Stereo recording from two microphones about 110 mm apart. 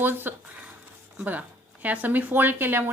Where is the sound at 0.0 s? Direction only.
20° right (ahead or behind).